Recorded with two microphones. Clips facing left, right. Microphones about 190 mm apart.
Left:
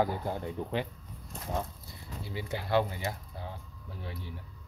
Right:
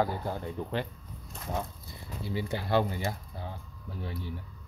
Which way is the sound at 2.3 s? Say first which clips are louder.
Right 1 dB; 30° right (ahead or behind).